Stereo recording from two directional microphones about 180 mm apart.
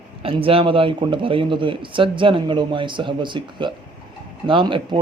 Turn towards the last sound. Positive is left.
turn(degrees=-25)  # may be behind; listen again after turning